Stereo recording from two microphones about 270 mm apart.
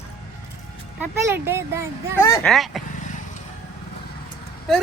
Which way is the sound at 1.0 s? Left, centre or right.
Centre.